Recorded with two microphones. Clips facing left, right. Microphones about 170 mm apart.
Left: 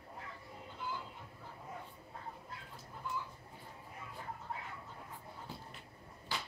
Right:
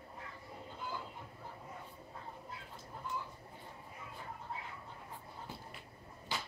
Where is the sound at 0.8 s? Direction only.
45° right (ahead or behind).